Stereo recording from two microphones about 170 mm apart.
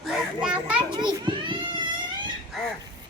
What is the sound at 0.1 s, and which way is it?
Children playing, 5° right (ahead or behind).